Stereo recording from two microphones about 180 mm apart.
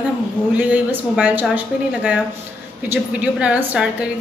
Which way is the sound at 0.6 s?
10° right (ahead or behind).